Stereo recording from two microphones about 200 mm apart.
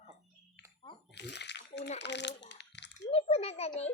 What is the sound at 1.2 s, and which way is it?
Bathtub, 60° left (ahead or behind).